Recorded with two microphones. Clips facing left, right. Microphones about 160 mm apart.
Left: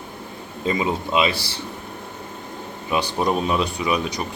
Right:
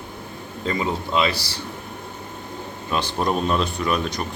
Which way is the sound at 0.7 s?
15° left (ahead or behind).